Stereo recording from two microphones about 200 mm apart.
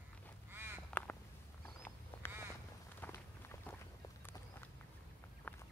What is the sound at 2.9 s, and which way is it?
Walk, 10° left (ahead or behind).